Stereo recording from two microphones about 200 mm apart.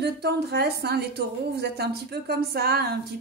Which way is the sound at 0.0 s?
55° right (ahead or behind).